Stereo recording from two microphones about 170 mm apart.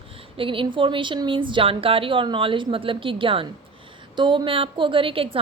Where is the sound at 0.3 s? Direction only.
30° right (ahead or behind).